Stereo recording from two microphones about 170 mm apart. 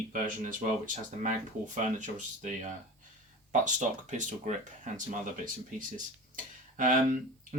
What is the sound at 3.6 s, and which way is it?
Speech, 45° right (ahead or behind).